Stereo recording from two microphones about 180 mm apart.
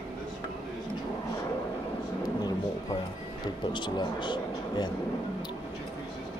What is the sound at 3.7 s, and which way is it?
Speech, 25° left (ahead or behind).